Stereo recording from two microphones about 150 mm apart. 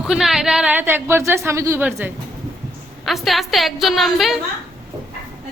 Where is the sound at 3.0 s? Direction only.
Centre (ahead or behind).